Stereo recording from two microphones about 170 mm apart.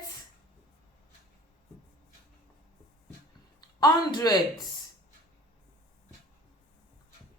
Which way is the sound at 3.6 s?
25° left (ahead or behind).